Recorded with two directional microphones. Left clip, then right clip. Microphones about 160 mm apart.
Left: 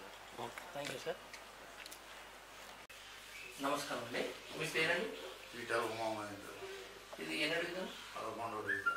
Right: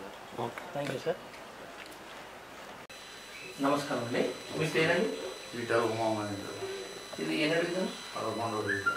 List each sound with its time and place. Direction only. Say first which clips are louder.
0.4 s speech: right 9 dB; 15° right (ahead or behind)
3.6 s speech: right 9 dB; 10° right (ahead or behind)
6.7 s a sound: right 9 dB; 10° right (ahead or behind)
8.3 s speech: right 8 dB; 30° right (ahead or behind)